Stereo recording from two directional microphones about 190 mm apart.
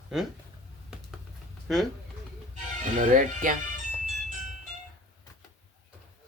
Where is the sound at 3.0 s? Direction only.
45° right (ahead or behind).